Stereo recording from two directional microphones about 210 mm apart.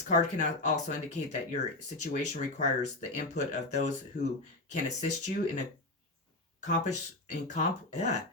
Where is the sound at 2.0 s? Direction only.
35° left (ahead or behind).